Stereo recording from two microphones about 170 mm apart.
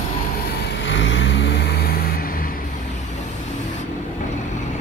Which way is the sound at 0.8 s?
90° left.